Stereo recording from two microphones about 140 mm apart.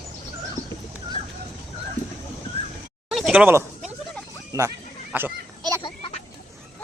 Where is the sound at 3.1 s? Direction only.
5° right (ahead or behind).